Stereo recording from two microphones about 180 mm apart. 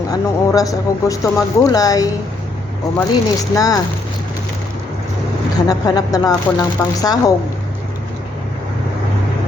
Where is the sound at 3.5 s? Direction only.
20° left (ahead or behind).